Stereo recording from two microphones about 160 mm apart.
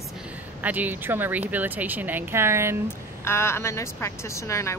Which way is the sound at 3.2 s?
15° left (ahead or behind).